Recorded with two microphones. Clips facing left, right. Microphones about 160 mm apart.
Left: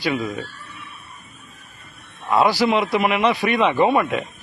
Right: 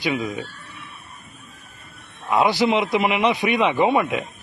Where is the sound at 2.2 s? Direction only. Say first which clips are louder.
Left 1 dB; 20° right (ahead or behind).